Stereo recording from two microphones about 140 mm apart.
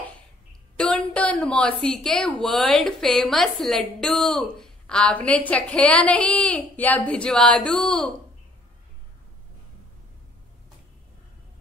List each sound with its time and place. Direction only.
0.7 s a woman's voice: 5° left (ahead or behind)